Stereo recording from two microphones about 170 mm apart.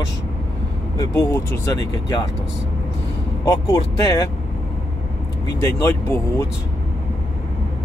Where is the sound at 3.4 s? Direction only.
20° left (ahead or behind).